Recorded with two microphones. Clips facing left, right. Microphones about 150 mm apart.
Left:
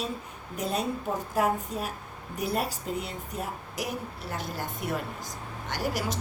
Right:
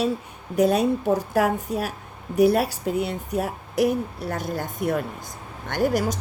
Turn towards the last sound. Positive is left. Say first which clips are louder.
# right 8 dB
turn(degrees=-50)  # may be behind; listen again after turning